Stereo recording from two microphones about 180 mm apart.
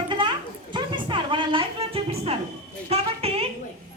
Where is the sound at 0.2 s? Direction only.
25° right (ahead or behind).